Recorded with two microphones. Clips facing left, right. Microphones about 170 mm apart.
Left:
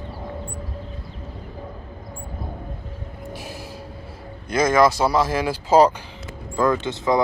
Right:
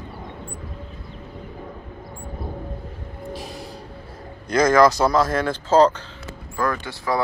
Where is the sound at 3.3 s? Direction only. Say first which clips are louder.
Right 2 dB; centre (ahead or behind).